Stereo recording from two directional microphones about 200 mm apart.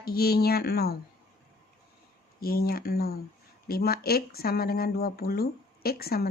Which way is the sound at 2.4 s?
50° left (ahead or behind).